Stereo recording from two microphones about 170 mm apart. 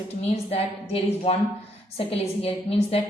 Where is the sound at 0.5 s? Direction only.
35° left (ahead or behind).